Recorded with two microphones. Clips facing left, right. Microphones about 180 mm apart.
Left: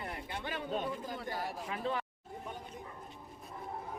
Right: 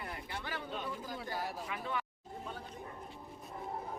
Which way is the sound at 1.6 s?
30° left (ahead or behind).